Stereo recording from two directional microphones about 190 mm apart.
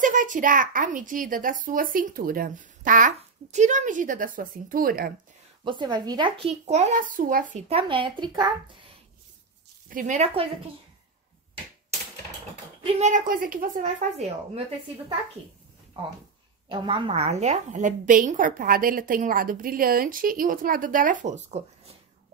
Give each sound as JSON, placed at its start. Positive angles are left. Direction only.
{"t": 0.0, "sound": "a woman's voice", "side_deg": -45}
{"t": 5.6, "sound": "a child's voice", "side_deg": -25}
{"t": 9.8, "sound": "a child's voice", "side_deg": -45}
{"t": 12.8, "sound": "a child's voice", "side_deg": -40}
{"t": 16.6, "sound": "a woman's voice", "side_deg": -25}